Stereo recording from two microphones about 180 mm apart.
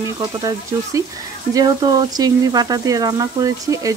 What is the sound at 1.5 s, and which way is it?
Speech, 20° right (ahead or behind).